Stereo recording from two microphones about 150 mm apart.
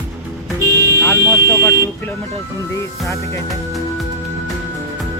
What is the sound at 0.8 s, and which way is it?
Vehicle, 20° right (ahead or behind).